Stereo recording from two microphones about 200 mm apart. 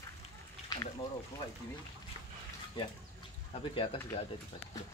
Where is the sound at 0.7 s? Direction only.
20° left (ahead or behind).